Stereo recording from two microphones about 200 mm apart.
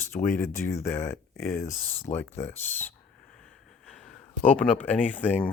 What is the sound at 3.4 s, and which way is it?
Snort, 5° left (ahead or behind).